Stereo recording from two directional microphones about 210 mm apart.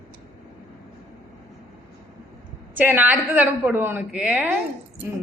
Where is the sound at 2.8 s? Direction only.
10° right (ahead or behind).